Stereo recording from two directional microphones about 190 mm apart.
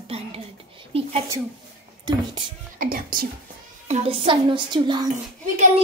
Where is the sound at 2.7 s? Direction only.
50° right (ahead or behind).